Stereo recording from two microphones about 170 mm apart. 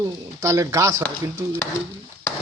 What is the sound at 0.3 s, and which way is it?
A man's voice, 15° right (ahead or behind).